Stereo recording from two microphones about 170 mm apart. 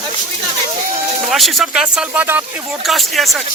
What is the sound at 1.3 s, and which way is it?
Speech, centre (ahead or behind).